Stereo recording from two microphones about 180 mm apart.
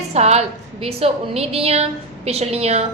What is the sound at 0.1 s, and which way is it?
A woman's voice, 35° right (ahead or behind).